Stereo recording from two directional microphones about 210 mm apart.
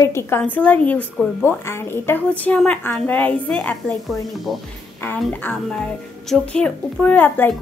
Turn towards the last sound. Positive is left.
turn(degrees=10)  # may be behind; listen again after turning